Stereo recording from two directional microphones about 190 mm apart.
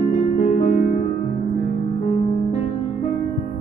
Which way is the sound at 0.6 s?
40° left (ahead or behind).